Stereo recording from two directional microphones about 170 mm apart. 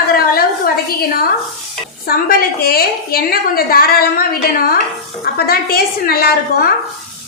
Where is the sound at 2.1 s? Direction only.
65° left (ahead or behind).